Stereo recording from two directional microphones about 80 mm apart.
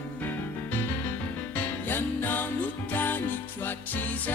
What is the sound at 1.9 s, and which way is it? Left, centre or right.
Music, left.